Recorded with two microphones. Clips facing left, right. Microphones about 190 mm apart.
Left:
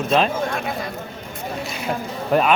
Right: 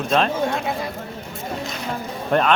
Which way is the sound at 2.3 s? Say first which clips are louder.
Left 1 dB; 5° left (ahead or behind).